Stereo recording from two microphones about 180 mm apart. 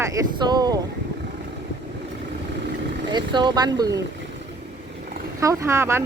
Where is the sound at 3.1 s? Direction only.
25° right (ahead or behind).